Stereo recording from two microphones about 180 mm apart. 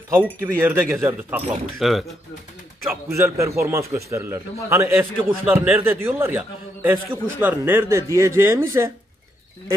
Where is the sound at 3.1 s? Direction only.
15° right (ahead or behind).